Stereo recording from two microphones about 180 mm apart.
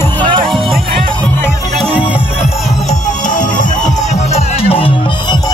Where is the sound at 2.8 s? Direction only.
45° left (ahead or behind); by 5.5 s 25° left (ahead or behind).